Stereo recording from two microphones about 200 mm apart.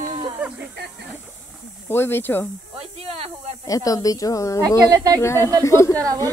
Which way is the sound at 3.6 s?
15° left (ahead or behind).